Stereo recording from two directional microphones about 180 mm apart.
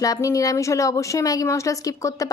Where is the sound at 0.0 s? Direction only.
20° left (ahead or behind).